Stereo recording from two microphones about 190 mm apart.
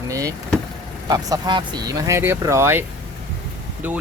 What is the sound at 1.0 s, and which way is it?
Speech, 20° right (ahead or behind).